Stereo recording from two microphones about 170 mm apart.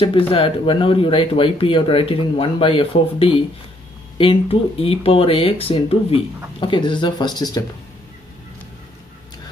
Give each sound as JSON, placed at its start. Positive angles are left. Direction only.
{"t": 0.0, "sound": "speech", "side_deg": 30}